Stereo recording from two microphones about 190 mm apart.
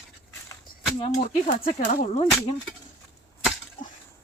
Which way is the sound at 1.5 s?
45° left (ahead or behind).